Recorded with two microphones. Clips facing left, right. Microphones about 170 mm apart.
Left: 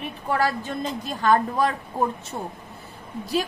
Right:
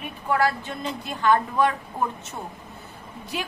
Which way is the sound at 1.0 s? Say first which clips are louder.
Left 1 dB; 40° left (ahead or behind).